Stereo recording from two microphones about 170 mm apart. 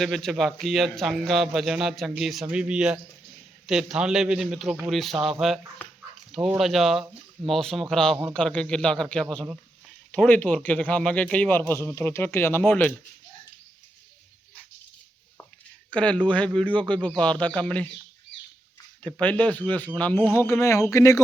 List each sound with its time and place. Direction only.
0.0 s a man's voice: centre (ahead or behind)
15.9 s a man's voice: 5° left (ahead or behind)
19.0 s a man's voice: 10° left (ahead or behind)